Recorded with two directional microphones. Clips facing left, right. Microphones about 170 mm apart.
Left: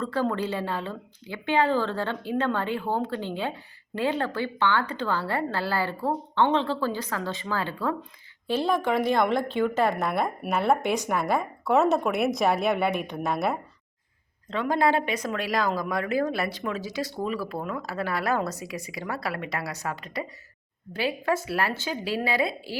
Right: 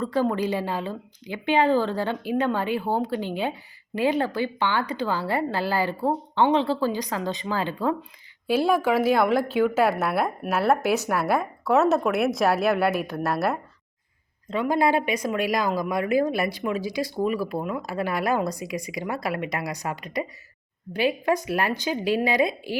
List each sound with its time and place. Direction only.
0.0 s a woman's voice: 15° right (ahead or behind)